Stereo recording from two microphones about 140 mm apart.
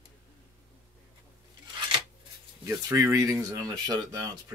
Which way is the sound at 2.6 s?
25° right (ahead or behind).